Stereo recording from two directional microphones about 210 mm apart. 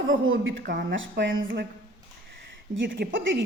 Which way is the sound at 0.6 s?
55° right (ahead or behind).